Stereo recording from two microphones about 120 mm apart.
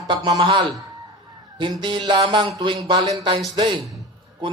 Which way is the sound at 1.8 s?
40° right (ahead or behind).